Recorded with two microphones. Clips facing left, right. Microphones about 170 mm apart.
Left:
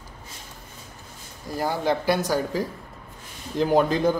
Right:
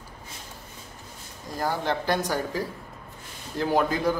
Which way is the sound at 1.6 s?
10° left (ahead or behind).